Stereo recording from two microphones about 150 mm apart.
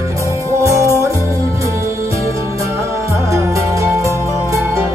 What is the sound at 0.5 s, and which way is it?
Music, 20° right (ahead or behind).